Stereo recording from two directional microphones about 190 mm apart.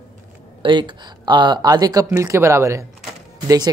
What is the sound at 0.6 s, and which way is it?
Speech, 25° right (ahead or behind).